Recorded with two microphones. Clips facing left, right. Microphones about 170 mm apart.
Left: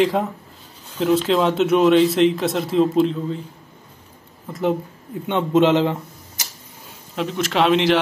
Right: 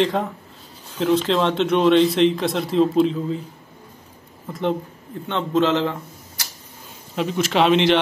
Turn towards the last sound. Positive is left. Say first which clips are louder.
# even
turn(degrees=0)  # may be behind; listen again after turning